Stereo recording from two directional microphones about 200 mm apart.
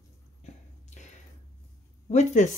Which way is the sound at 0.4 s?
35° left (ahead or behind).